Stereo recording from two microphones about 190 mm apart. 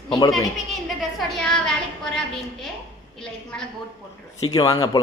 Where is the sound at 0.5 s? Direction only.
Centre (ahead or behind).